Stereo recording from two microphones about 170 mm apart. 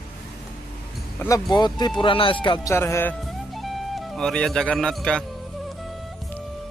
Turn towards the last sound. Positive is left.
turn(degrees=5)  # may be behind; listen again after turning